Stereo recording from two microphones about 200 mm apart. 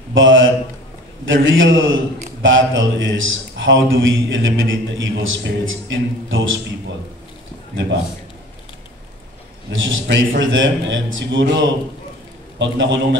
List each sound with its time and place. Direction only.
0.1 s a man's voice: 70° right (ahead or behind)
9.7 s a man's voice: 70° right (ahead or behind)